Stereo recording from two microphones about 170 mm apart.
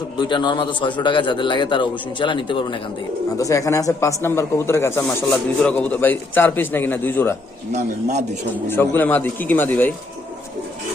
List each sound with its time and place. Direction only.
0.2 s a man's voice: 25° left (ahead or behind)
3.3 s a man's voice: 20° left (ahead or behind)
7.7 s a man's voice: 40° right (ahead or behind)
8.6 s a man's voice: 15° left (ahead or behind)